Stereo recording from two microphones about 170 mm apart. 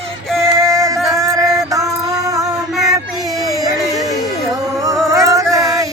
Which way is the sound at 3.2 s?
20° right (ahead or behind).